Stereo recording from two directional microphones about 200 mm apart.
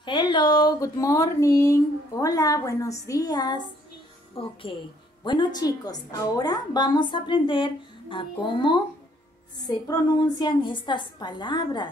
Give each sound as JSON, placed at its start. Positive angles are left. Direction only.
{"t": 0.0, "sound": "a woman's voice", "side_deg": 25}